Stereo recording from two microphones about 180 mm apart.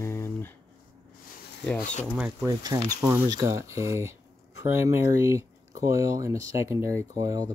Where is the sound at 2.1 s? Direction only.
5° right (ahead or behind).